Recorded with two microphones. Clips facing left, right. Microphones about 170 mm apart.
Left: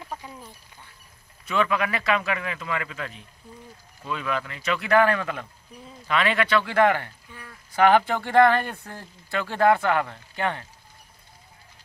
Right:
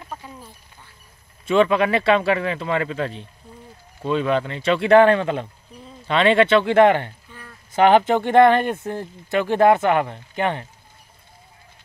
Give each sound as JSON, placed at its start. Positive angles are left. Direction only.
{"t": 1.4, "sound": "a man's voice", "side_deg": -25}